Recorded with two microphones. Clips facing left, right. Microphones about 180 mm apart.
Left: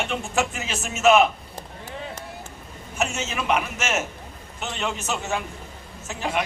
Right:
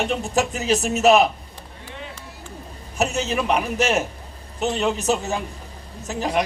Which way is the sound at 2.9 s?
35° right (ahead or behind).